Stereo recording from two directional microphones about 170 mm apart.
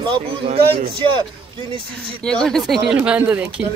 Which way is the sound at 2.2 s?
5° left (ahead or behind).